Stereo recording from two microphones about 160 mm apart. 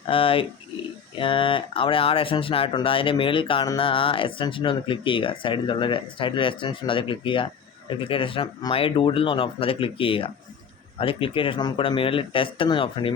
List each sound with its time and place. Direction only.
0.1 s speech: 35° left (ahead or behind)